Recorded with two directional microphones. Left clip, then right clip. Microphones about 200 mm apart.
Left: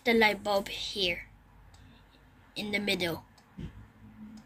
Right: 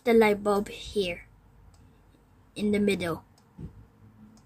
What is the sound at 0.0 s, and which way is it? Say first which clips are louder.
A woman's voice: right 4 dB; 45° right (ahead or behind).